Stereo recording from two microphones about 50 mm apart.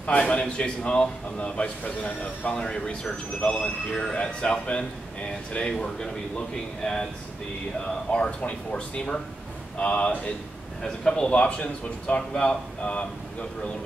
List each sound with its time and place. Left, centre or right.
0.2 s a man's voice: centre
8.1 s a man's voice: left